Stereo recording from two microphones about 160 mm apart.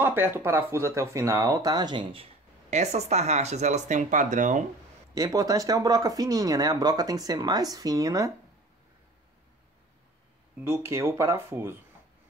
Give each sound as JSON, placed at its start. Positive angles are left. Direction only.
{"t": 0.0, "sound": "speech", "side_deg": -15}
{"t": 2.7, "sound": "speech", "side_deg": -45}
{"t": 5.1, "sound": "speech", "side_deg": -20}
{"t": 10.6, "sound": "speech", "side_deg": -15}